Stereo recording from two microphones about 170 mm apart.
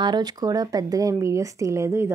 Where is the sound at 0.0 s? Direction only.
25° right (ahead or behind).